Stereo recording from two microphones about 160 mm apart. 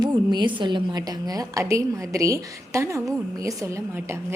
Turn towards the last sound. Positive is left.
turn(degrees=-20)  # may be behind; listen again after turning